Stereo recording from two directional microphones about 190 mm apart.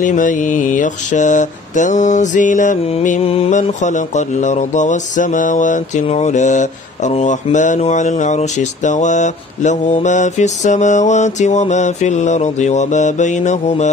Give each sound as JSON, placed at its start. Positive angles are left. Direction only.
{"t": 0.0, "sound": "mantra", "side_deg": 40}